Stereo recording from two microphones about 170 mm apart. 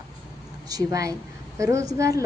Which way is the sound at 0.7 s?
20° right (ahead or behind).